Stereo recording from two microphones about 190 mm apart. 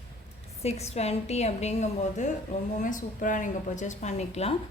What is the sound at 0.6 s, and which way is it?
A woman's voice, 35° left (ahead or behind).